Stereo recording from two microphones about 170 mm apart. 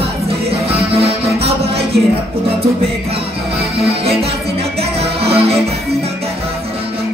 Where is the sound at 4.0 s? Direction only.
35° right (ahead or behind).